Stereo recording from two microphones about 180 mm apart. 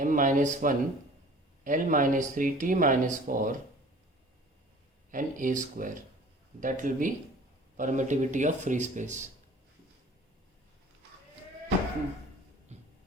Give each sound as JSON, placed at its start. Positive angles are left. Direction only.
{"t": 0.0, "sound": "speech", "side_deg": -45}
{"t": 5.1, "sound": "speech", "side_deg": -45}
{"t": 12.7, "sound": "music", "side_deg": -40}